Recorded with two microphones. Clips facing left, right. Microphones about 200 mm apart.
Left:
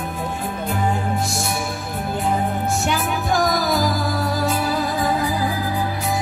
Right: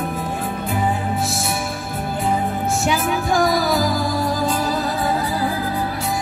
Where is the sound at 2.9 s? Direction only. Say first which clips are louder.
Right 2 dB; centre (ahead or behind).